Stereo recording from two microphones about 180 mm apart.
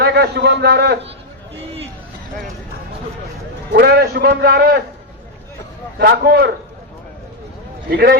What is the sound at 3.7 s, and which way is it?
A man's voice, 60° right (ahead or behind).